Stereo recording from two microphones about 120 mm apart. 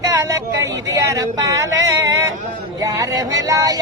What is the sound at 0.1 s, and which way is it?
Speech, 25° right (ahead or behind).